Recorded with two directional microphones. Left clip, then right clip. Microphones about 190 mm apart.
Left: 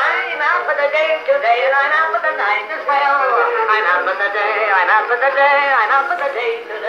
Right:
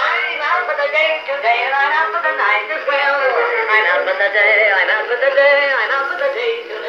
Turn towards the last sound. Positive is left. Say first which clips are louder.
# even
turn(degrees=10)  # may be behind; listen again after turning